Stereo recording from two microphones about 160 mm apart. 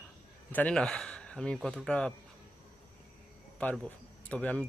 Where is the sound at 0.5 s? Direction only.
5° left (ahead or behind).